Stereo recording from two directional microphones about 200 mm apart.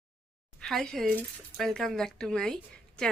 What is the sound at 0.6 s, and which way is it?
Speech, centre (ahead or behind).